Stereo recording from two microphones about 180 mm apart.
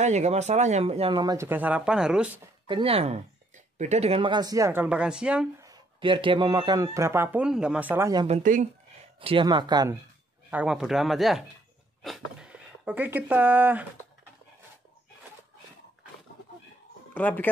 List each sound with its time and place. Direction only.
0.0 s speech: 40° right (ahead or behind); by 2.4 s 5° right (ahead or behind)
2.6 s speech: 30° right (ahead or behind); by 5.5 s 5° right (ahead or behind)
5.6 s speech: 25° right (ahead or behind); by 7.8 s 5° right (ahead or behind)
7.9 s speech: 20° right (ahead or behind)
8.3 s speech: 45° right (ahead or behind)
9.2 s speech: 30° right (ahead or behind)
10.5 s speech: 5° right (ahead or behind)
17.1 s speech: 10° left (ahead or behind)